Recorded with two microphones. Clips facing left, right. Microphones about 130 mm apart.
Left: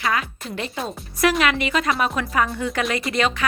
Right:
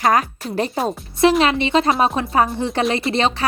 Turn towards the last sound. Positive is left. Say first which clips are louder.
# right 4 dB
turn(degrees=-30)  # may be behind; listen again after turning